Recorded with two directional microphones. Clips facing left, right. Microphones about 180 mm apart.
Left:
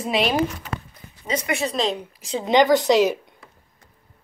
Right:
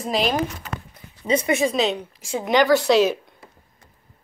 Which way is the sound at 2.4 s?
20° left (ahead or behind).